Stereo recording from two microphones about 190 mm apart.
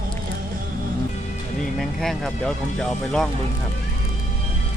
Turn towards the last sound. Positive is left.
turn(degrees=5)  # may be behind; listen again after turning